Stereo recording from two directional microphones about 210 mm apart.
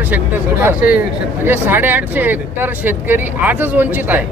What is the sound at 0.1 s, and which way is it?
Speech, 10° right (ahead or behind).